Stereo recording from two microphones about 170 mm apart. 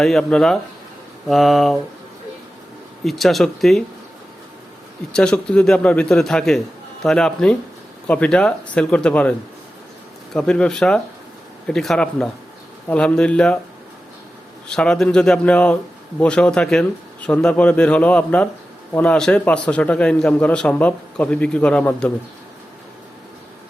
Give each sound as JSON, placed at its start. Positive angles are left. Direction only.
{"t": 0.0, "sound": "a man's voice", "side_deg": 5}
{"t": 3.0, "sound": "a man's voice", "side_deg": 0}
{"t": 5.1, "sound": "a man's voice", "side_deg": 5}
{"t": 10.3, "sound": "a man's voice", "side_deg": 5}
{"t": 14.7, "sound": "a man's voice", "side_deg": 5}